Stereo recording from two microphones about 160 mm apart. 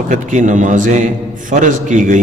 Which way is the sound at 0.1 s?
50° right (ahead or behind).